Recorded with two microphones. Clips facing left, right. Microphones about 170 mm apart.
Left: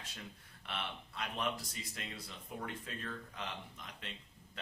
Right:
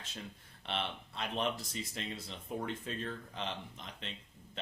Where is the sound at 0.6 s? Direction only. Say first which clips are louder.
Right 5 dB; 25° right (ahead or behind).